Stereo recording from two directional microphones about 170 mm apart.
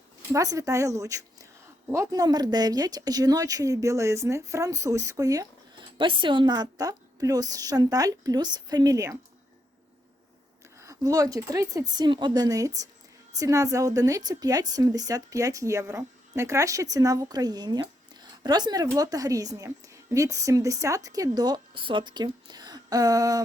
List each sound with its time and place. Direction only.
0.3 s a woman's voice: 20° right (ahead or behind)
10.8 s a woman's voice: 20° right (ahead or behind)